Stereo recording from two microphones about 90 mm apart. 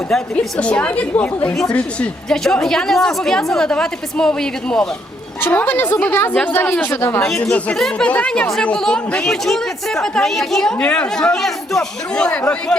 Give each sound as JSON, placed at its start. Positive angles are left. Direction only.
{"t": 0.3, "sound": "speech", "side_deg": 15}
{"t": 5.4, "sound": "a woman's voice", "side_deg": 20}
{"t": 7.2, "sound": "speech", "side_deg": 5}